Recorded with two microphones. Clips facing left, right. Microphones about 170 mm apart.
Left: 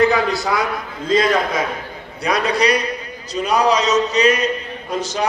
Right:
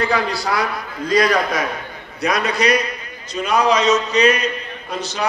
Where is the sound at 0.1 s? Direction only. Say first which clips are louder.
Left 2 dB; 20° left (ahead or behind).